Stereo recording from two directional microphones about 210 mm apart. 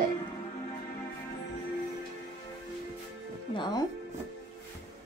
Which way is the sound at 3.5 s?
20° left (ahead or behind).